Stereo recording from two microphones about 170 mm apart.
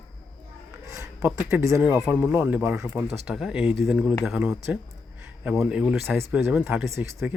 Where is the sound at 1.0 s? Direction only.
15° right (ahead or behind).